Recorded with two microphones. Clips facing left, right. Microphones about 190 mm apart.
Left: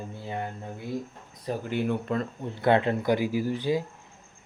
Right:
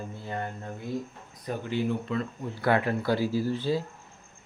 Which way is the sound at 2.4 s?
25° left (ahead or behind).